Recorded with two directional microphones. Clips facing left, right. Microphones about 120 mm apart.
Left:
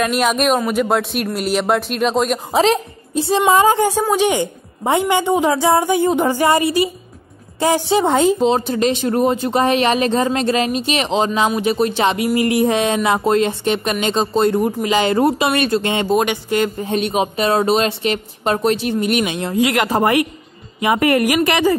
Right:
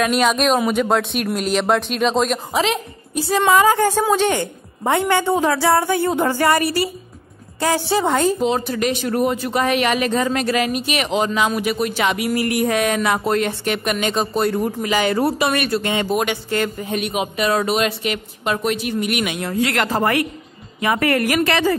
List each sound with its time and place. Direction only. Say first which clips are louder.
0.0 s speech: even; centre (ahead or behind)
2.5 s a woman's voice: left 5 dB; 35° left (ahead or behind); by 8.4 s 10° left (ahead or behind)
8.4 s speech: left 4 dB; 25° left (ahead or behind)
19.5 s a woman's voice: left 4 dB; 10° left (ahead or behind)